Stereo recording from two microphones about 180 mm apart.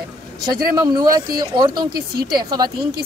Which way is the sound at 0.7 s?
20° right (ahead or behind).